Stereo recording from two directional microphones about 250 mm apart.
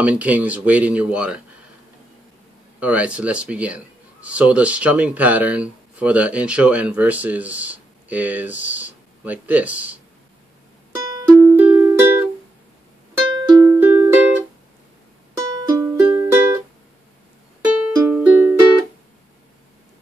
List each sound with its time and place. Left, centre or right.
0.0 s speech: centre
2.8 s speech: centre
11.0 s music: centre
15.4 s music: centre
18.1 s music: centre